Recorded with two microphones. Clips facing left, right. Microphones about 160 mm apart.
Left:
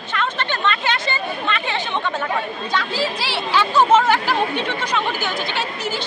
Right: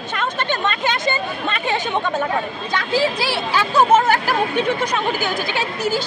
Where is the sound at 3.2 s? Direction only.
45° right (ahead or behind).